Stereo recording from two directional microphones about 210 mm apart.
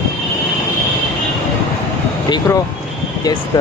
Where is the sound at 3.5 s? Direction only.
20° left (ahead or behind).